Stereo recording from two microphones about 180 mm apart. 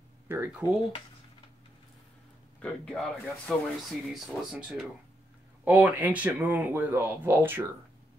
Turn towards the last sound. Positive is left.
turn(degrees=-10)  # may be behind; listen again after turning